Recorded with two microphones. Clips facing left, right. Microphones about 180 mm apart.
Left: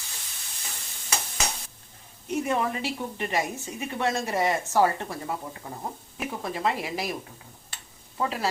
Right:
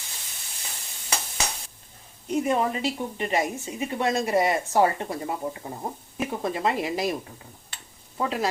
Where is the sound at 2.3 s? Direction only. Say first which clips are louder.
Right 3 dB; 30° right (ahead or behind).